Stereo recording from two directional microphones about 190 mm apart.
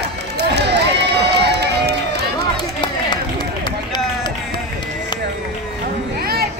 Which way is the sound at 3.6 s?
20° left (ahead or behind).